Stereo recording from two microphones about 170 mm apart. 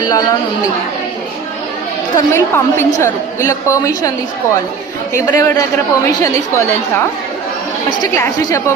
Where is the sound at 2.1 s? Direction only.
15° left (ahead or behind).